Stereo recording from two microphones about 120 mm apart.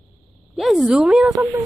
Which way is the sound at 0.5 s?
5° right (ahead or behind).